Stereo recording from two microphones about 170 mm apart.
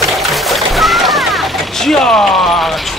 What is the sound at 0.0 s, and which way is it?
Speech, centre (ahead or behind).